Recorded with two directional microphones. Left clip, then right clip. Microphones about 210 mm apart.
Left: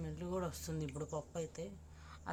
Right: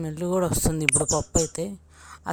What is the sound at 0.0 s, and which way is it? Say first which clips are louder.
Speech: right 17 dB; 40° right (ahead or behind).